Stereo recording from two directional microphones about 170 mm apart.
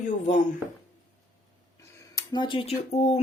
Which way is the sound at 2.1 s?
25° left (ahead or behind).